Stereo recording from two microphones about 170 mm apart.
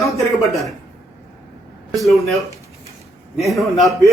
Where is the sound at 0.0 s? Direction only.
Centre (ahead or behind).